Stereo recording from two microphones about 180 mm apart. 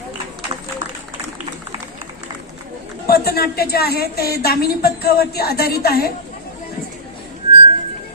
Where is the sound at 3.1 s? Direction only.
60° left (ahead or behind).